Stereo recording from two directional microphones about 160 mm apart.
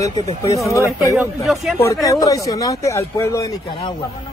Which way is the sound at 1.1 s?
Centre (ahead or behind).